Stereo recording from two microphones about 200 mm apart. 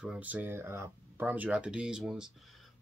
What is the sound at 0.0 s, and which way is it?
Speech, 5° right (ahead or behind).